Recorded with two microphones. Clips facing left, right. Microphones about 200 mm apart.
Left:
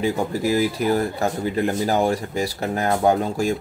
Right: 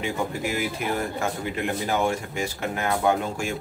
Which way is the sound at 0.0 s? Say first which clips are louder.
Left 6 dB; 35° left (ahead or behind).